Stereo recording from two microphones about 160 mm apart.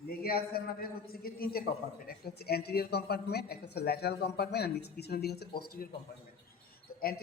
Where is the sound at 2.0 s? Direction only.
85° left.